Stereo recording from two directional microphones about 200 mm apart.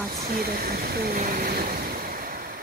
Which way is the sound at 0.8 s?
50° right (ahead or behind).